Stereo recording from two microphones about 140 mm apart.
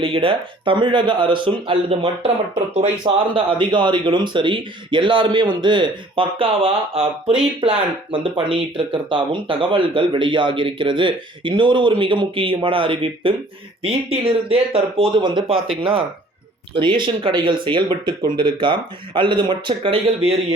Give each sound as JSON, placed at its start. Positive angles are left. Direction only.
{"t": 0.0, "sound": "a man's voice", "side_deg": -40}
{"t": 3.1, "sound": "a man's voice", "side_deg": -30}
{"t": 16.7, "sound": "a man's voice", "side_deg": -35}